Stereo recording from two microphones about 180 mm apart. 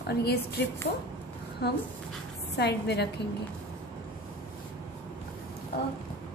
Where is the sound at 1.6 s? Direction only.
65° left (ahead or behind).